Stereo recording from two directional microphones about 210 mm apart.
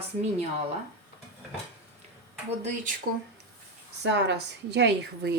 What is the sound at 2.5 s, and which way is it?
Speech, 35° right (ahead or behind).